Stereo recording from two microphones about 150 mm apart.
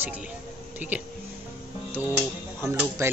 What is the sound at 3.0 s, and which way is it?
Speech, 20° right (ahead or behind).